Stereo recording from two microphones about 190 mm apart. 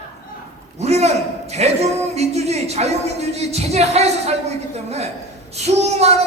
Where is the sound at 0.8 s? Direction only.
35° right (ahead or behind).